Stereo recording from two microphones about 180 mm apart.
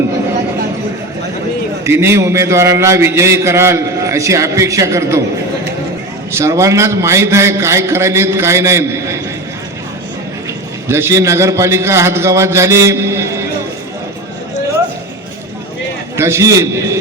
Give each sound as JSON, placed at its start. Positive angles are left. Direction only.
{"t": 1.8, "sound": "a man's voice", "side_deg": -15}
{"t": 6.3, "sound": "a man's voice", "side_deg": -15}
{"t": 10.8, "sound": "a man's voice", "side_deg": -15}
{"t": 16.1, "sound": "a man's voice", "side_deg": -15}